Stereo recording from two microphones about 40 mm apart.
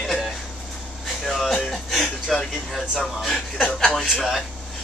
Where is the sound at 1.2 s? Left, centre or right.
Centre.